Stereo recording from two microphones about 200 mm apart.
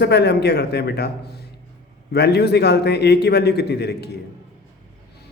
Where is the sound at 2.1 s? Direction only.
55° left (ahead or behind).